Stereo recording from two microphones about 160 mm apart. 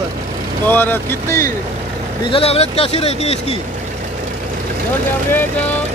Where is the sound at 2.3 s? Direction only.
40° left (ahead or behind).